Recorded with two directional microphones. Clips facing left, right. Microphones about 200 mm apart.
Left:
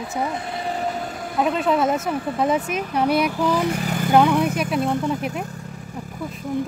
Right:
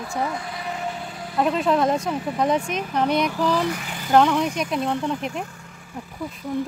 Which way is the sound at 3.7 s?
35° left (ahead or behind).